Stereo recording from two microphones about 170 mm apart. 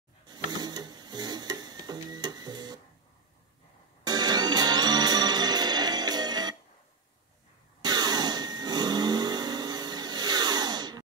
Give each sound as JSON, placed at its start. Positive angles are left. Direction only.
{"t": 0.5, "sound": "a sound", "side_deg": -25}
{"t": 4.0, "sound": "music", "side_deg": -25}
{"t": 7.8, "sound": "vehicle", "side_deg": -25}